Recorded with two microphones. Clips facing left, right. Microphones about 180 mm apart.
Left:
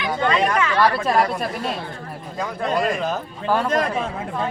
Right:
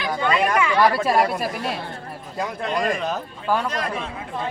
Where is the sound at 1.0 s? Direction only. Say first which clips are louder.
Even; 5° right (ahead or behind).